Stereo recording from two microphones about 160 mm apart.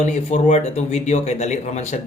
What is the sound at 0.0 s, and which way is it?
A man's voice, 45° left (ahead or behind).